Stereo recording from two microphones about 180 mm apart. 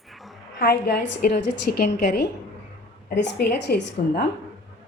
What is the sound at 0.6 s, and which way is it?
Speech, 65° left (ahead or behind).